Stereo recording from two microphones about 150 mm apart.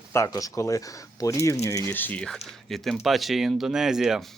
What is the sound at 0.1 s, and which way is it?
Speech, 20° left (ahead or behind).